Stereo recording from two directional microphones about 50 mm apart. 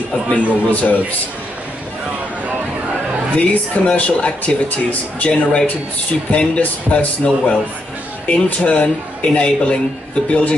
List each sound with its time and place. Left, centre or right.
0.3 s speech: left
3.3 s speech: left